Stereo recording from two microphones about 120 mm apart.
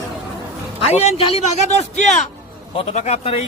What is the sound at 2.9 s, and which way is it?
Speech, 70° left (ahead or behind).